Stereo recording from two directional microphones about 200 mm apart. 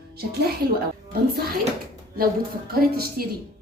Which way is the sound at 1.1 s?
50° right (ahead or behind).